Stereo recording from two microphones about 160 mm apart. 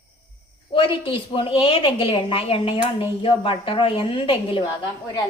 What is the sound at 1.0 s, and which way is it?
A woman's voice, 35° left (ahead or behind).